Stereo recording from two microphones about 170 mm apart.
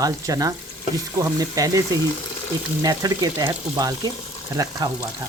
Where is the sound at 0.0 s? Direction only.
20° right (ahead or behind).